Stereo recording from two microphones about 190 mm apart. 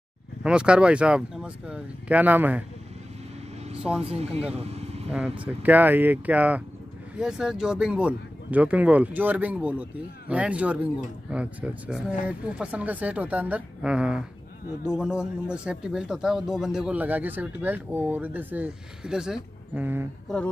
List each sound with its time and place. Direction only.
0.4 s speech: 5° right (ahead or behind)
4.0 s speech: 30° right (ahead or behind)
4.6 s vehicle: 35° right (ahead or behind)
5.1 s speech: 5° right (ahead or behind)
20.3 s speech: centre (ahead or behind)